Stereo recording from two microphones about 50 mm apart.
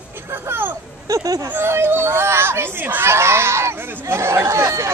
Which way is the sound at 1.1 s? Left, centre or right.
Right.